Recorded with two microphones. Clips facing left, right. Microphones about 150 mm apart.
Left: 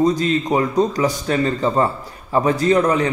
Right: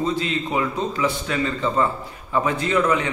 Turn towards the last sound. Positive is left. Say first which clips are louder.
# left 5 dB
turn(degrees=40)  # may be behind; listen again after turning